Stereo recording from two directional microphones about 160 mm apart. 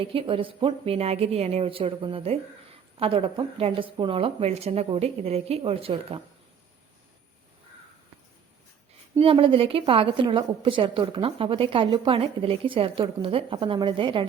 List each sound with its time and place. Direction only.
0.0 s a woman's voice: 35° right (ahead or behind)
9.1 s a woman's voice: 35° right (ahead or behind)